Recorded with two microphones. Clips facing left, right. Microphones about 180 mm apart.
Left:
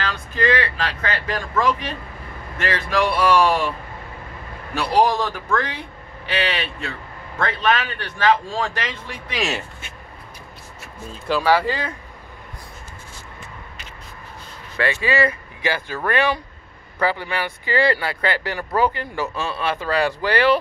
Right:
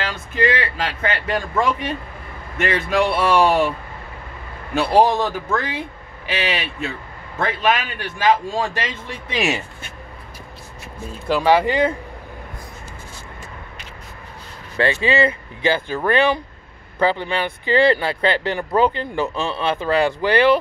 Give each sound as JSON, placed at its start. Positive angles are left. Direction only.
{"t": 0.0, "sound": "speech", "side_deg": -25}
{"t": 4.7, "sound": "speech", "side_deg": -25}
{"t": 11.2, "sound": "speech", "side_deg": -20}
{"t": 14.8, "sound": "speech", "side_deg": -25}